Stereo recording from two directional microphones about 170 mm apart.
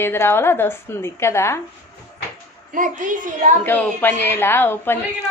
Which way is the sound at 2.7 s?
50° right (ahead or behind).